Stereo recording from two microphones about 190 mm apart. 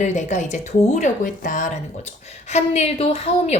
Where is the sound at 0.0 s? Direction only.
40° left (ahead or behind).